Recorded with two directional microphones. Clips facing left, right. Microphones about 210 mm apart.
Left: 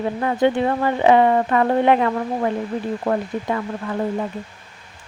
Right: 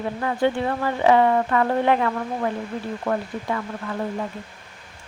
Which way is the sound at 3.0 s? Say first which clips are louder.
Left 3 dB; 35° left (ahead or behind).